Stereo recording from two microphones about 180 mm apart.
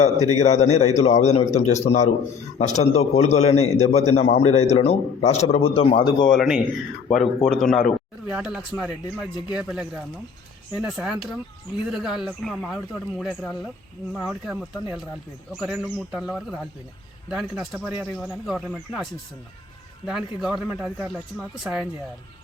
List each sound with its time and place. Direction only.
0.0 s a man's voice: 40° left (ahead or behind)
6.3 s speech: centre (ahead or behind)
20.1 s speech: centre (ahead or behind)